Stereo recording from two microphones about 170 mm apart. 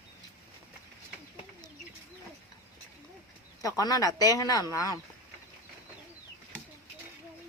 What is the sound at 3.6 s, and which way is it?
Speech, 20° left (ahead or behind).